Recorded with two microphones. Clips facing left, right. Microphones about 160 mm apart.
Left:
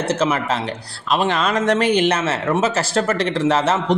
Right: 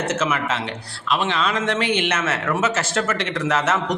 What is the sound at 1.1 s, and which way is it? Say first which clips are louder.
A man's voice: left 3 dB; 40° left (ahead or behind).